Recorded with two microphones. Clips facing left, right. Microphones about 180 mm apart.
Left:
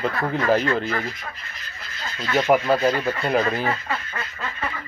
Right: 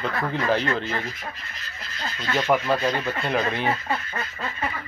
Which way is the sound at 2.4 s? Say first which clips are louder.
Left 4 dB; 15° left (ahead or behind).